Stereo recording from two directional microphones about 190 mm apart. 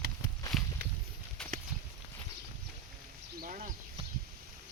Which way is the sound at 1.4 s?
5° left (ahead or behind).